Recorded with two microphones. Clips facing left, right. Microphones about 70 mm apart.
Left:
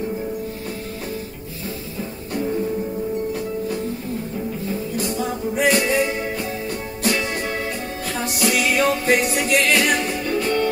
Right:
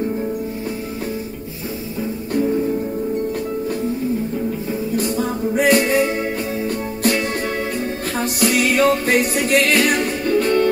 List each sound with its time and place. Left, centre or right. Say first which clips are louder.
4.9 s music: right 5 dB; right